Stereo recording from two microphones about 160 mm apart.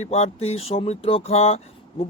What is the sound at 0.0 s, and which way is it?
Speech, 40° left (ahead or behind).